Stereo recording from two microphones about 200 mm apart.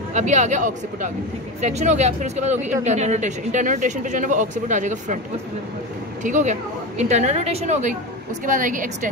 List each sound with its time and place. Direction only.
0.1 s speech: 35° right (ahead or behind)
6.2 s speech: 40° right (ahead or behind)